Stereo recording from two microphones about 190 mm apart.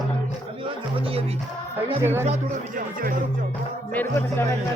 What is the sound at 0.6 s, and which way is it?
Music, 30° right (ahead or behind).